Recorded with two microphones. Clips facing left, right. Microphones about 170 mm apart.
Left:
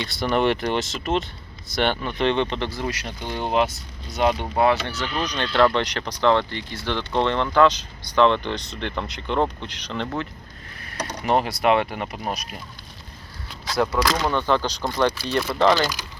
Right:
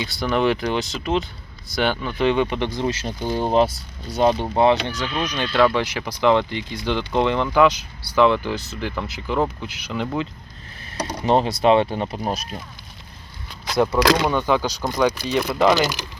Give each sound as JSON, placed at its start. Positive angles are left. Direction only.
{"t": 0.0, "sound": "speech", "side_deg": 0}
{"t": 10.9, "sound": "speech", "side_deg": -30}
{"t": 13.7, "sound": "speech", "side_deg": -20}
{"t": 15.3, "sound": "speech", "side_deg": 0}